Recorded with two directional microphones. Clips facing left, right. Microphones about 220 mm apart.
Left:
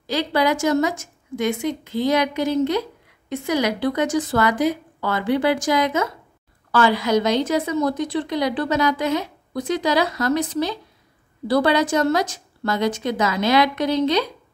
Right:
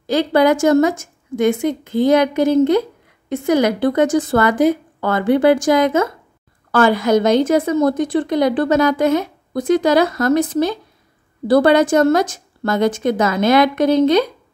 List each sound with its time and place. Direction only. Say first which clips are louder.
0.0 s a woman's voice: right 6 dB; 50° right (ahead or behind)